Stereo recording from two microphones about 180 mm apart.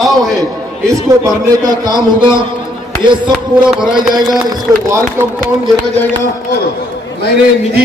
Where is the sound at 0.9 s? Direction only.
20° right (ahead or behind).